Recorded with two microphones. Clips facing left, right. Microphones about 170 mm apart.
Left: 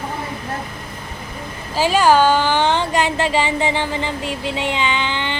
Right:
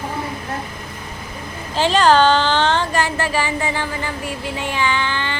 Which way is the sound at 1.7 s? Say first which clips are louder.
Even; 10° left (ahead or behind).